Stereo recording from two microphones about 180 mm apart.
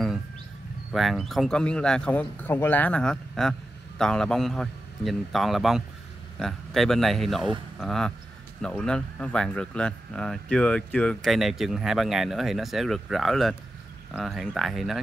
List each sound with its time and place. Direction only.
0.9 s speech: centre (ahead or behind)